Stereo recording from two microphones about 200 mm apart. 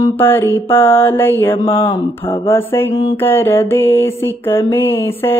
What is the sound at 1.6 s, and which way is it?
Mantra, 25° left (ahead or behind).